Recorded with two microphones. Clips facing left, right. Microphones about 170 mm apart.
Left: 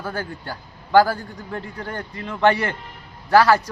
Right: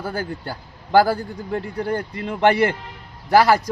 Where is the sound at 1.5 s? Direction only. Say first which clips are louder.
Right 7 dB; 20° right (ahead or behind).